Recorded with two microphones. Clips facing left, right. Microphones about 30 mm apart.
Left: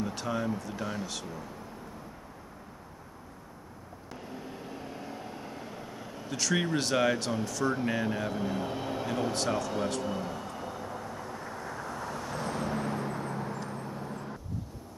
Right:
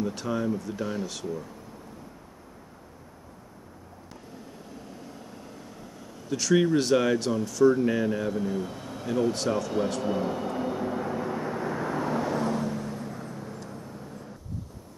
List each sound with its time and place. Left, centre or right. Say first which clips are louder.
0.0 s speech: right 3 dB; centre
4.4 s vehicle: left 2 dB; left
6.3 s a man's voice: right 7 dB; centre
9.3 s speech: right 3 dB; centre
10.1 s vehicle: right 7 dB; centre
12.3 s vehicle: right 7 dB; centre
12.5 s vehicle: right 1 dB; centre